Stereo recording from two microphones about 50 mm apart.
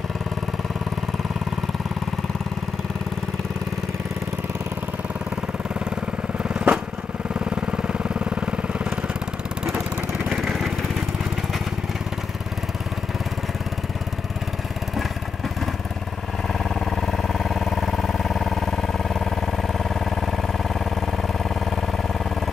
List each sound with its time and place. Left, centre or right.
6.5 s lawn mower: centre
7.3 s vehicle: centre
16.5 s vehicle: centre